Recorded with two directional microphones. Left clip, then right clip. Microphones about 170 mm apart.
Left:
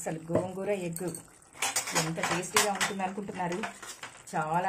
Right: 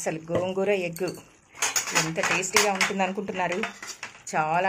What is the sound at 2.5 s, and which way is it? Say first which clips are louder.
Speech: right 3 dB; 25° right (ahead or behind).